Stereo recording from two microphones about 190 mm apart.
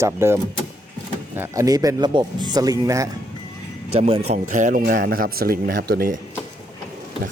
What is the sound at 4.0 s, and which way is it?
Speech, 30° right (ahead or behind).